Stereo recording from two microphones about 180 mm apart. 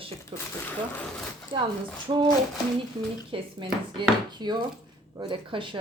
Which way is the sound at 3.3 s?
30° right (ahead or behind).